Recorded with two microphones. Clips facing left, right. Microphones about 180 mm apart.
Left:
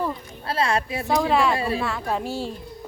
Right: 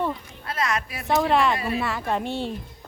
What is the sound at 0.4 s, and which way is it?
Speech, 30° left (ahead or behind).